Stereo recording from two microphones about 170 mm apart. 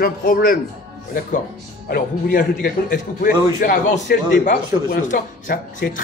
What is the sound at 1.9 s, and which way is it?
A man's voice, 55° left (ahead or behind).